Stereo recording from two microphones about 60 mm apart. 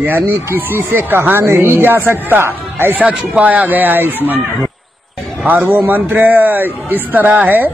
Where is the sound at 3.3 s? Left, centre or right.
Right.